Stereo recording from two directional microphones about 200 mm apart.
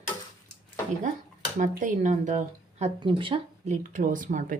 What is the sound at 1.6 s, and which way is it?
Speech, 40° right (ahead or behind).